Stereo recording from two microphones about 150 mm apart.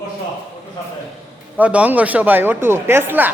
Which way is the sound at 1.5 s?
10° right (ahead or behind).